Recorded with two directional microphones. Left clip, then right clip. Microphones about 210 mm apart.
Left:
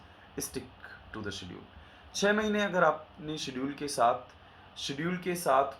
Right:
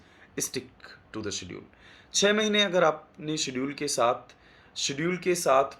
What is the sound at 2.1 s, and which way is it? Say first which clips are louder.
Speech: right 5 dB; 25° right (ahead or behind).